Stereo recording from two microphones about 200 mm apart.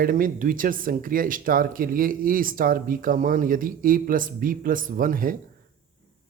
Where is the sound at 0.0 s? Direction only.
45° right (ahead or behind).